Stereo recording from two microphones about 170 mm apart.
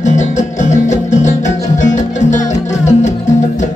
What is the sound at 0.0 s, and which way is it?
Music, 45° left (ahead or behind).